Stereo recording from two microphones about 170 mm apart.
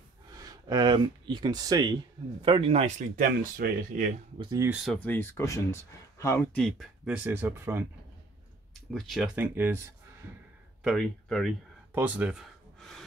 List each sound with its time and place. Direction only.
0.4 s a man's voice: 25° right (ahead or behind)
3.2 s speech: 55° right (ahead or behind)
4.4 s speech: 25° right (ahead or behind)
4.6 s speech: 5° right (ahead or behind)
4.9 s speech: 10° left (ahead or behind)
6.6 s speech: centre (ahead or behind)
7.2 s speech: 10° right (ahead or behind)
8.9 s speech: centre (ahead or behind)
9.3 s speech: 10° right (ahead or behind)
10.8 s speech: centre (ahead or behind)
11.9 s a sound: 10° right (ahead or behind)